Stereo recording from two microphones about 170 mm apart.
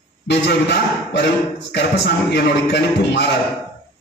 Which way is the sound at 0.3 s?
80° left.